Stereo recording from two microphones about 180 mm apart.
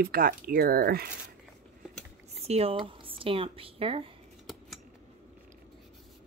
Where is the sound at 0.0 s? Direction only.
55° right (ahead or behind).